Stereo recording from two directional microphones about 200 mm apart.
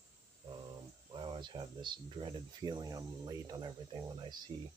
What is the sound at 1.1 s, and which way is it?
Speech, 25° right (ahead or behind).